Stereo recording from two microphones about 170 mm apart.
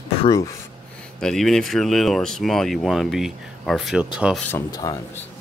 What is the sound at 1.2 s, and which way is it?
Speech, 5° left (ahead or behind).